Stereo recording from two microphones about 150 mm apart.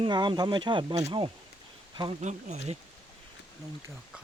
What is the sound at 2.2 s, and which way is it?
Speech, 50° right (ahead or behind).